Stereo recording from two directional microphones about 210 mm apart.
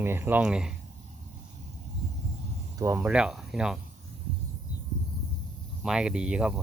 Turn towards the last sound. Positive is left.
turn(degrees=-5)  # may be behind; listen again after turning